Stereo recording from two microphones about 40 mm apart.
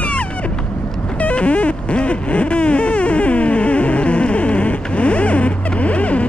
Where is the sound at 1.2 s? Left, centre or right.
Left.